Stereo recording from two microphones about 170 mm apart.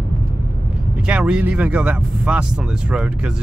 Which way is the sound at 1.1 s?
5° right (ahead or behind).